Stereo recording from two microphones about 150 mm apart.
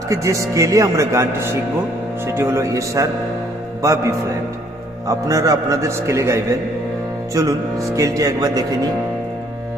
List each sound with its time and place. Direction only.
0.1 s speech: 20° right (ahead or behind)
5.0 s speech: 20° right (ahead or behind)